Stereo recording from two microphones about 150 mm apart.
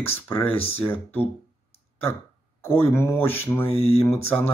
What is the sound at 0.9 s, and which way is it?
Mantra, 15° left (ahead or behind).